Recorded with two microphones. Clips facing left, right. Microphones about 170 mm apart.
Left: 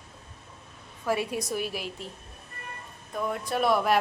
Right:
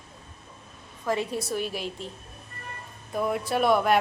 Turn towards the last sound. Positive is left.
turn(degrees=0)  # may be behind; listen again after turning